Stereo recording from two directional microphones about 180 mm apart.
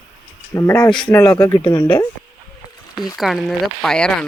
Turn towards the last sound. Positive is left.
turn(degrees=5)  # may be behind; listen again after turning